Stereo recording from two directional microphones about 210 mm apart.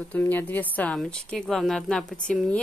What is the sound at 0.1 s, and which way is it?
A woman's voice, 10° left (ahead or behind).